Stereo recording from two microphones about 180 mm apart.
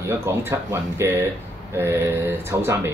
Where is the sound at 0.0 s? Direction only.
15° right (ahead or behind).